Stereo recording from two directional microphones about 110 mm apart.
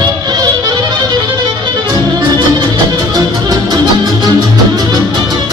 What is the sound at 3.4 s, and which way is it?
Music, 35° right (ahead or behind).